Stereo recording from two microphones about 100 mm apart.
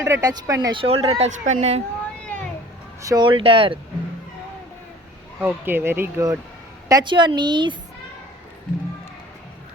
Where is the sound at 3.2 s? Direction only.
60° right (ahead or behind).